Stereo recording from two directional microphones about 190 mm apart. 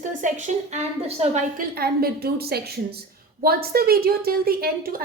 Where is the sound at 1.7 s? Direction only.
55° right (ahead or behind).